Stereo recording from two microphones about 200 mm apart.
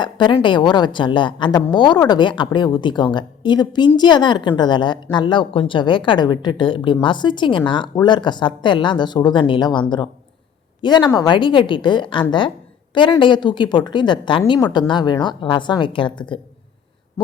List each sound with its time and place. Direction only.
0.0 s a woman's voice: 25° left (ahead or behind)